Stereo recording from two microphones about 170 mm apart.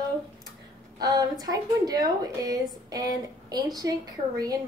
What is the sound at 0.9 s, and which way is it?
A woman's voice, 20° right (ahead or behind).